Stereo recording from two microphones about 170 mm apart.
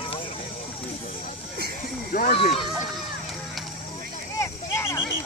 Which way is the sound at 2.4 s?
35° left (ahead or behind).